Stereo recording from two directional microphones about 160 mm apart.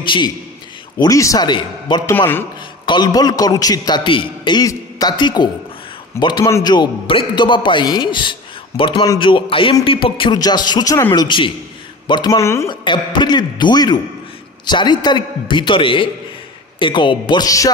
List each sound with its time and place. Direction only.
0.0 s a man's voice: 30° left (ahead or behind)
2.0 s speech: 15° left (ahead or behind)
2.8 s a man's voice: 30° left (ahead or behind)
12.6 s a man's voice: 30° left (ahead or behind)